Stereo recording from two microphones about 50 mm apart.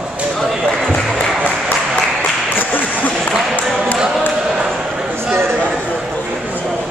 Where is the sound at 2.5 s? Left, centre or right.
Left.